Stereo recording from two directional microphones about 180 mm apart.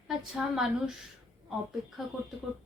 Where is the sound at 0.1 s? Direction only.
Centre (ahead or behind).